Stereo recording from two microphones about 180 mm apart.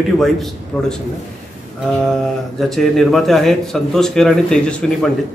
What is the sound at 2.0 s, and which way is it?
Speech, centre (ahead or behind).